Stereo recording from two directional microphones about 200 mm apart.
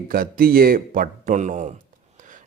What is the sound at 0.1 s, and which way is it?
A man's voice, 50° right (ahead or behind).